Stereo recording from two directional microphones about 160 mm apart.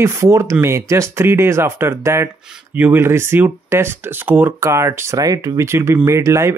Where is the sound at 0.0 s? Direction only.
15° right (ahead or behind).